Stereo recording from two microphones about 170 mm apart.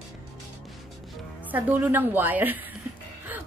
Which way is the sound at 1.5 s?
10° right (ahead or behind).